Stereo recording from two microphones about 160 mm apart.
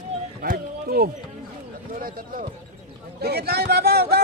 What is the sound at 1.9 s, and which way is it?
Speech, 60° right (ahead or behind).